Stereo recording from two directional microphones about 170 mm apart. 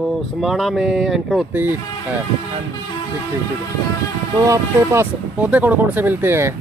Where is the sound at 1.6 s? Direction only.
10° right (ahead or behind).